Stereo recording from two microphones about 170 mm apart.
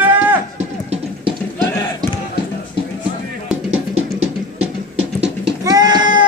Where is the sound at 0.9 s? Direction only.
30° right (ahead or behind).